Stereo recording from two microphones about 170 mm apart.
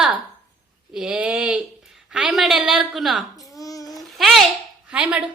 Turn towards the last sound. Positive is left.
turn(degrees=-10)  # may be behind; listen again after turning